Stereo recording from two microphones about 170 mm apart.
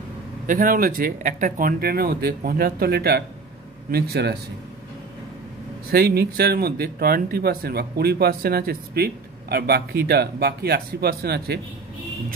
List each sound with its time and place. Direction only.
0.5 s speech: 55° right (ahead or behind); by 4.4 s 70° right (ahead or behind)
5.9 s speech: 65° right (ahead or behind)